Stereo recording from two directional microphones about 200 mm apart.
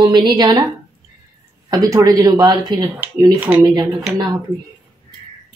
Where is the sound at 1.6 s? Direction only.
15° right (ahead or behind).